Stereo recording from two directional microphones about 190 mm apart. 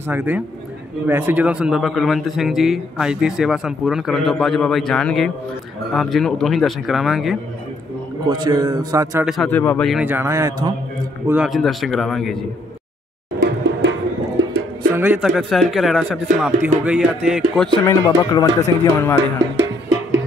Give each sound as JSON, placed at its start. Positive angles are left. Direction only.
{"t": 0.1, "sound": "a man's voice", "side_deg": -10}
{"t": 8.3, "sound": "a man's voice", "side_deg": -20}
{"t": 9.2, "sound": "a man's voice", "side_deg": 0}
{"t": 9.5, "sound": "speech", "side_deg": 10}
{"t": 9.8, "sound": "a man's voice", "side_deg": -5}
{"t": 11.2, "sound": "a man's voice", "side_deg": -5}
{"t": 13.4, "sound": "music", "side_deg": -80}
{"t": 15.0, "sound": "a man's voice", "side_deg": -10}
{"t": 17.8, "sound": "speech", "side_deg": 20}